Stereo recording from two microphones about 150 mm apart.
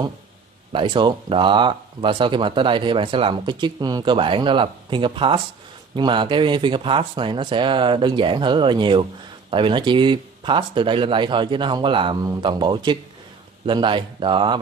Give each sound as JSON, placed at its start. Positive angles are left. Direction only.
{"t": 0.7, "sound": "speech", "side_deg": -35}